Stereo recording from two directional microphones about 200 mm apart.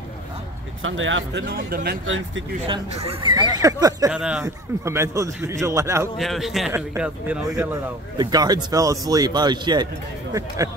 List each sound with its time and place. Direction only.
0.8 s speech: 75° right (ahead or behind)
1.4 s speech: 50° right (ahead or behind)
2.0 s speech: 75° right (ahead or behind)
2.6 s speech: 25° right (ahead or behind)
4.1 s a man's voice: 5° right (ahead or behind)
6.1 s a man's voice: centre (ahead or behind); by 9.8 s 20° right (ahead or behind)